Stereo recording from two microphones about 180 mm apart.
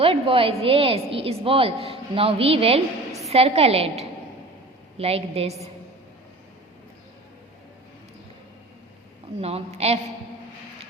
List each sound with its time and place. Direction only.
0.0 s a woman's voice: 30° right (ahead or behind)
9.4 s a woman's voice: 35° right (ahead or behind)